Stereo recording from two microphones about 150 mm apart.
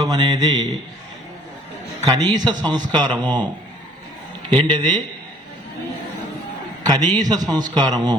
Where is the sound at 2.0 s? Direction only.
25° right (ahead or behind).